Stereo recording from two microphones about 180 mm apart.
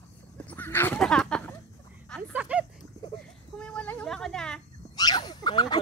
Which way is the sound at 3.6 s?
5° left (ahead or behind).